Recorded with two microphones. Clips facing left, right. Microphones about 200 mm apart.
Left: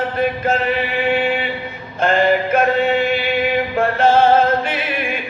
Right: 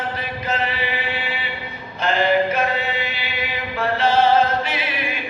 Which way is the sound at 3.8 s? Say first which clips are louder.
Left 4 dB; 50° left (ahead or behind).